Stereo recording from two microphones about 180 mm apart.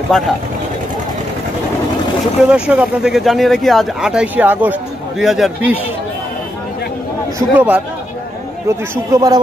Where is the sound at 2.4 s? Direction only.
5° right (ahead or behind).